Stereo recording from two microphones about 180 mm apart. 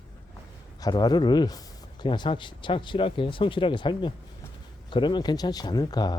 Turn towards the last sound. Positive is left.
turn(degrees=20)  # may be behind; listen again after turning